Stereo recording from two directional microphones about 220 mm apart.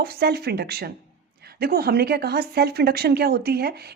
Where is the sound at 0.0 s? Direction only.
45° right (ahead or behind).